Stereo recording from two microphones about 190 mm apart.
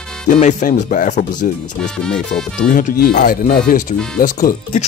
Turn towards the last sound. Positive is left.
turn(degrees=45)  # may be behind; listen again after turning